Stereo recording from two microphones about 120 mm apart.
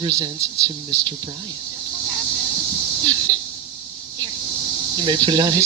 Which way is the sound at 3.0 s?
35° right (ahead or behind).